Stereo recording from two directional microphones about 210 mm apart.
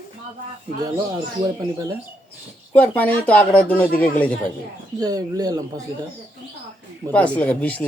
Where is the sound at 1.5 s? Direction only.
15° right (ahead or behind).